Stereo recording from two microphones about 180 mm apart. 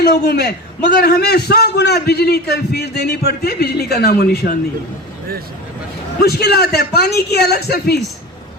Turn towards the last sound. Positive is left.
turn(degrees=60)  # may be behind; listen again after turning